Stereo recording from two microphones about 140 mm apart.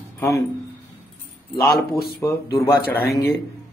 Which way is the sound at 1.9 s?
Centre (ahead or behind).